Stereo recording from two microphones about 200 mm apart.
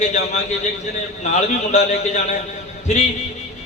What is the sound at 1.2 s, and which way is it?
A man's voice, 35° left (ahead or behind).